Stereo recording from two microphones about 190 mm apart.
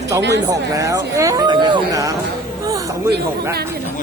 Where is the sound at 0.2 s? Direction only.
65° right (ahead or behind).